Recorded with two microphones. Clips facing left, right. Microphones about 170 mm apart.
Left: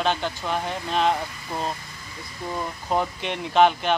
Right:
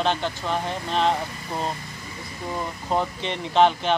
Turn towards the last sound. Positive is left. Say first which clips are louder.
# even
turn(degrees=5)  # may be behind; listen again after turning